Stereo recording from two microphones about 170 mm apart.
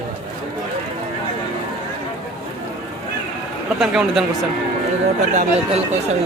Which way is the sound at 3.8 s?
Centre (ahead or behind).